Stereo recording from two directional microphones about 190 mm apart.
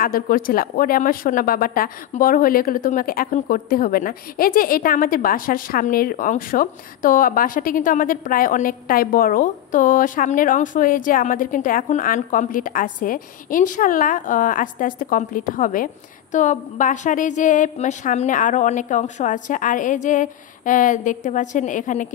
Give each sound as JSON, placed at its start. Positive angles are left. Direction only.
{"t": 0.0, "sound": "speech", "side_deg": 50}